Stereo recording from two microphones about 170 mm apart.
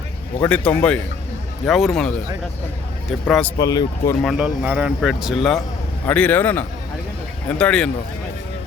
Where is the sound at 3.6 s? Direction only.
20° left (ahead or behind).